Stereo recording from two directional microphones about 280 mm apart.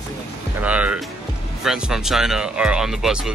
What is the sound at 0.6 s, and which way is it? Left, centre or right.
Speech, centre.